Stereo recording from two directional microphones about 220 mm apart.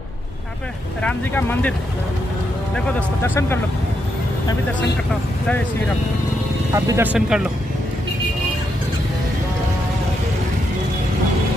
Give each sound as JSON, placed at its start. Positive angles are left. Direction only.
{"t": 1.0, "sound": "speech", "side_deg": 10}
{"t": 2.7, "sound": "speech", "side_deg": 5}
{"t": 6.7, "sound": "speech", "side_deg": -10}